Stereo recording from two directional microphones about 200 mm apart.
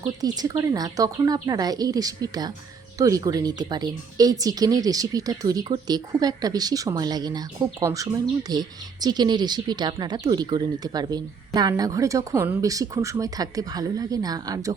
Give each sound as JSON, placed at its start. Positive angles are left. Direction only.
{"t": 0.0, "sound": "speech", "side_deg": -20}